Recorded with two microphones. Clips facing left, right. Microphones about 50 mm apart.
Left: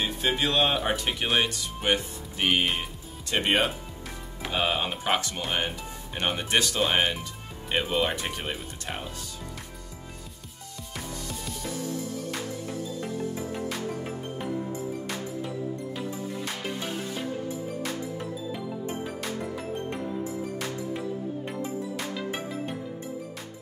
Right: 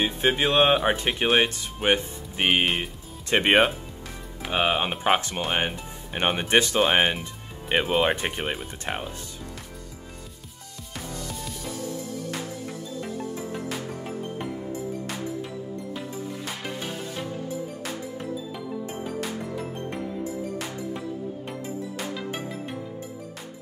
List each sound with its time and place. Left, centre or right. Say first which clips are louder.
0.0 s speech: right 4 dB; right